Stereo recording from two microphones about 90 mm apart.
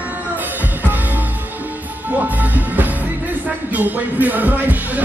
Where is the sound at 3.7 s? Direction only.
20° right (ahead or behind).